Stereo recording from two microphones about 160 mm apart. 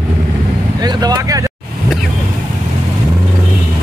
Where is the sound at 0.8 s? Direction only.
25° right (ahead or behind).